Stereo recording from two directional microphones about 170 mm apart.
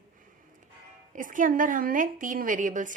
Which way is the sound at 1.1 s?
50° right (ahead or behind).